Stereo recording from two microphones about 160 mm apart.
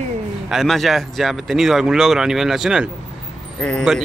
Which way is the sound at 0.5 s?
Centre (ahead or behind).